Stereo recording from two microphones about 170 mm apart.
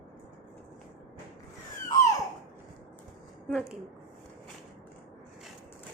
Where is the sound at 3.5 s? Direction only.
5° right (ahead or behind).